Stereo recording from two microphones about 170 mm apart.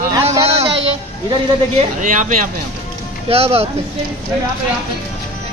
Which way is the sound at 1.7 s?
50° right (ahead or behind).